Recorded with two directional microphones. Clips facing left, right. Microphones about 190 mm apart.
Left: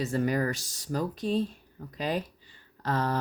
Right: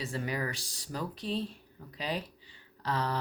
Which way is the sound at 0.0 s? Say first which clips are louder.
Left 8 dB; 45° left (ahead or behind).